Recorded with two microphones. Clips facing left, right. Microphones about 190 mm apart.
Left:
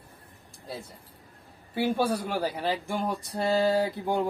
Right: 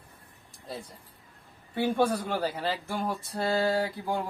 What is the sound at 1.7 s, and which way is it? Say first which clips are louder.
Speech: even; 5° left (ahead or behind).